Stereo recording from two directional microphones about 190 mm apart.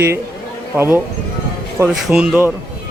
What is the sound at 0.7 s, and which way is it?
Speech, 10° right (ahead or behind).